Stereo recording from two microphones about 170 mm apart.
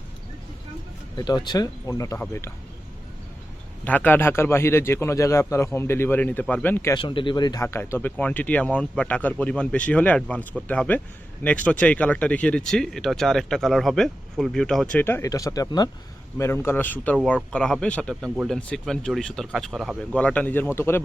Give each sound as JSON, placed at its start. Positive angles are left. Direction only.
{"t": 1.1, "sound": "speech", "side_deg": 25}
{"t": 3.8, "sound": "speech", "side_deg": 10}
{"t": 6.9, "sound": "speech", "side_deg": 30}
{"t": 15.0, "sound": "speech", "side_deg": 15}